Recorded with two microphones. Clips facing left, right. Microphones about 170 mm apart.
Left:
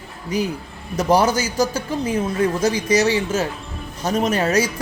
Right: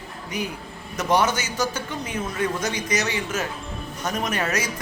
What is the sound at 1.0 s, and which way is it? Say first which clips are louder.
A man's voice: left 5 dB; 35° left (ahead or behind).